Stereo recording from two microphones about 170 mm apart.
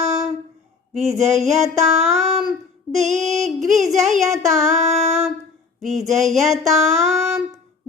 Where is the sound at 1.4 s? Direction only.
Centre (ahead or behind).